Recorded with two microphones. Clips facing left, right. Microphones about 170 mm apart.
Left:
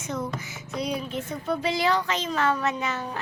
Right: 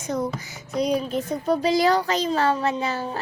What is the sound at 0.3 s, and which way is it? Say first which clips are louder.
Speech: right 6 dB; 35° right (ahead or behind).